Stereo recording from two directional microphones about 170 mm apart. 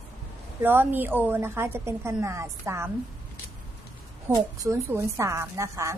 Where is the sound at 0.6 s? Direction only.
10° right (ahead or behind).